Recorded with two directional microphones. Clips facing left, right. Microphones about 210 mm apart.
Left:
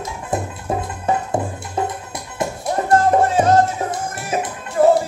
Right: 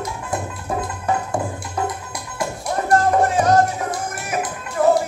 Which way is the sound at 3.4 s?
25° left (ahead or behind).